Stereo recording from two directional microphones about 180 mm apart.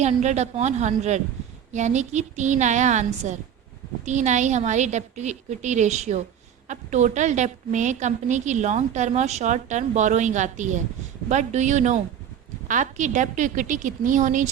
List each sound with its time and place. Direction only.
0.0 s a woman's voice: 40° right (ahead or behind)